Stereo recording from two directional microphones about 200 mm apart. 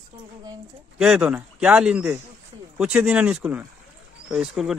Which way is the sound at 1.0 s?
5° right (ahead or behind).